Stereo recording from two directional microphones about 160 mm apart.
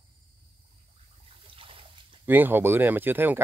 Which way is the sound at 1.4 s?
35° right (ahead or behind).